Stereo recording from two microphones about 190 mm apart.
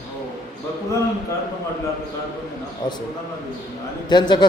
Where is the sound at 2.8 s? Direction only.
20° left (ahead or behind).